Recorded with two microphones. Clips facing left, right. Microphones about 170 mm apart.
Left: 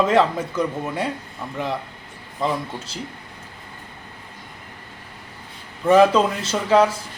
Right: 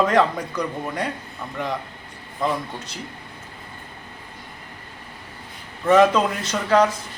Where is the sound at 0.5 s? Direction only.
5° left (ahead or behind).